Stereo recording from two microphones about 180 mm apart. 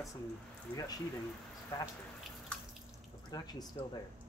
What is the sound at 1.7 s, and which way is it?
Speech, 15° left (ahead or behind).